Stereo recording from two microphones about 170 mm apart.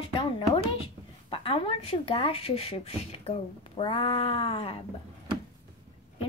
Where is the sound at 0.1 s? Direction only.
30° left (ahead or behind).